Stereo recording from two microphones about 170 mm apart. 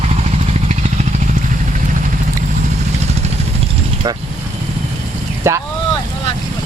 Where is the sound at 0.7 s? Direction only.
40° right (ahead or behind).